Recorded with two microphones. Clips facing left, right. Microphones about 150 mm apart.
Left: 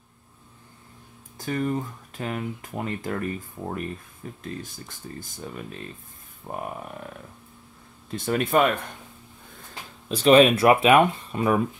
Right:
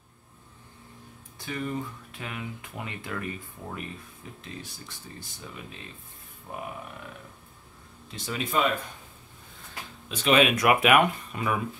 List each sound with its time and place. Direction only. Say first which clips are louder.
1.4 s speech: left 6 dB; 45° left (ahead or behind)
8.1 s speech: left 8 dB; 50° left (ahead or behind)
10.0 s speech: left 7 dB; 35° left (ahead or behind)